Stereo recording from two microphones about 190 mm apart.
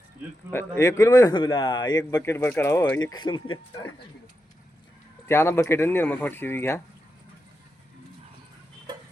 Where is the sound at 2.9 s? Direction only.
90° left.